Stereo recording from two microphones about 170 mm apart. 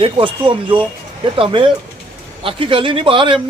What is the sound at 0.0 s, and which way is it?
Speech, 30° right (ahead or behind).